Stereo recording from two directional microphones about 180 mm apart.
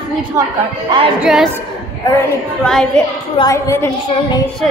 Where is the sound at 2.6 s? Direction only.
5° left (ahead or behind).